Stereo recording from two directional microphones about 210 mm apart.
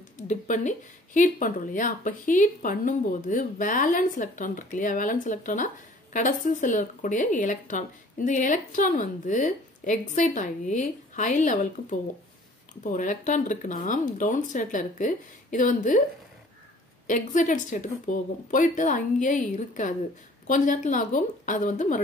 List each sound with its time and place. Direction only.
0.3 s speech: 35° left (ahead or behind)
17.1 s speech: 35° left (ahead or behind)